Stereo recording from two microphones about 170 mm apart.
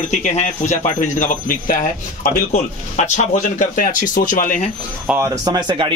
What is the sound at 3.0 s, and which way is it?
Speech, 45° left (ahead or behind).